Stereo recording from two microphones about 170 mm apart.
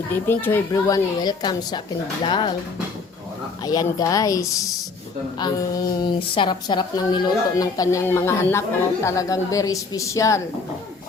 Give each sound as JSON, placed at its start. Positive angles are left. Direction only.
{"t": 0.3, "sound": "a woman's voice", "side_deg": 15}
{"t": 3.6, "sound": "a woman's voice", "side_deg": 20}